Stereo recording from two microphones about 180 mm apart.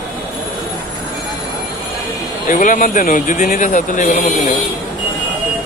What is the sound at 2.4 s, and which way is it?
Speech, 45° left (ahead or behind).